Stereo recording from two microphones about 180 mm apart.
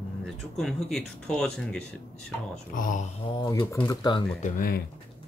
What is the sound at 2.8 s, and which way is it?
Speech, 45° left (ahead or behind).